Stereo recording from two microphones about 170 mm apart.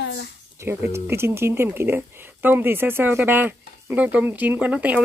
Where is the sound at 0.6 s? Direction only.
15° right (ahead or behind).